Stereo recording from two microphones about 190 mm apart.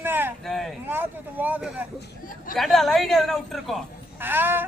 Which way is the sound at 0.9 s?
10° right (ahead or behind).